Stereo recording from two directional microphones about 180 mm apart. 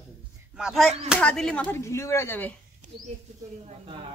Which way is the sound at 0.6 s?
5° right (ahead or behind).